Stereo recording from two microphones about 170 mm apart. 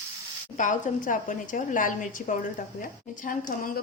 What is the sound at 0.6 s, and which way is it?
A woman's voice, 50° left (ahead or behind).